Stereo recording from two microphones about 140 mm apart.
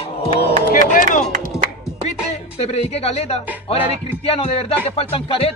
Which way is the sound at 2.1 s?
50° left (ahead or behind).